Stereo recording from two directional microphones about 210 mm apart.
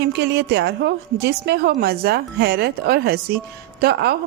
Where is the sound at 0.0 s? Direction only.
55° right (ahead or behind).